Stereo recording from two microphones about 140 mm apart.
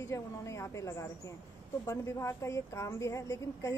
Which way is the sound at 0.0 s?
20° left (ahead or behind).